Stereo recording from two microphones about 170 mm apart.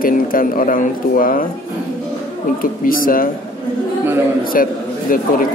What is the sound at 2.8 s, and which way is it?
Speech, 55° left (ahead or behind).